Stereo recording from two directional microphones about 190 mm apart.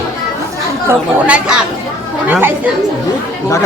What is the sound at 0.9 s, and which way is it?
Speech, 5° right (ahead or behind).